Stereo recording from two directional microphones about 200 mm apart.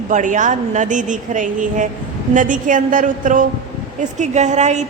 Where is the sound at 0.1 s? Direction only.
40° right (ahead or behind).